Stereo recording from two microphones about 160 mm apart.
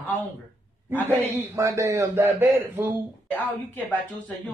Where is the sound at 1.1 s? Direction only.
15° right (ahead or behind).